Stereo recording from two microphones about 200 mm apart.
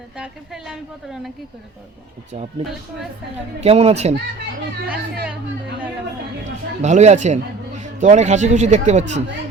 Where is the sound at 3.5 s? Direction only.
30° right (ahead or behind).